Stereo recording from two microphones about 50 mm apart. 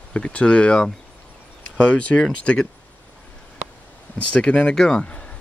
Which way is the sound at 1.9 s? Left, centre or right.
Left.